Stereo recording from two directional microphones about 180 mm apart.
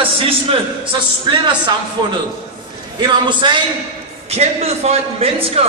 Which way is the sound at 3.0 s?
25° right (ahead or behind).